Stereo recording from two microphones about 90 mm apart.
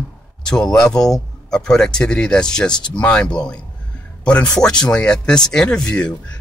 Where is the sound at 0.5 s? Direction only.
5° left (ahead or behind).